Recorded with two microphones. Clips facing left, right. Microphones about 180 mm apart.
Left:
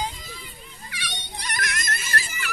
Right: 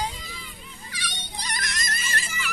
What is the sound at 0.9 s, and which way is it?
Children playing, 60° left (ahead or behind).